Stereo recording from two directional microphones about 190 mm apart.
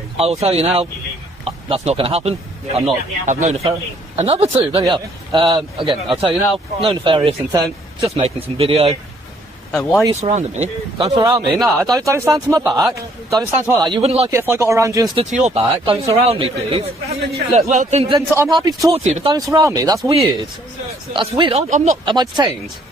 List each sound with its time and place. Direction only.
0.2 s a man's voice: 30° right (ahead or behind)
8.1 s a man's voice: 30° right (ahead or behind)
10.2 s a man's voice: 35° right (ahead or behind)
11.2 s speech: 15° right (ahead or behind)
11.5 s speech: centre (ahead or behind)
12.0 s a man's voice: 15° right (ahead or behind); by 14.3 s 30° right (ahead or behind)
14.3 s speech: 15° right (ahead or behind)
15.3 s a man's voice: 35° right (ahead or behind)
18.3 s a man's voice: 15° right (ahead or behind)
19.0 s a man's voice: 35° right (ahead or behind)
19.3 s a man's voice: 20° right (ahead or behind)
20.1 s a man's voice: 30° right (ahead or behind)
21.6 s a man's voice: 40° right (ahead or behind)
22.0 s a man's voice: 25° right (ahead or behind)